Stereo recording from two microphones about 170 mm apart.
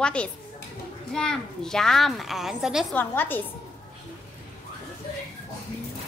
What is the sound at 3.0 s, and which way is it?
Speech, 10° left (ahead or behind).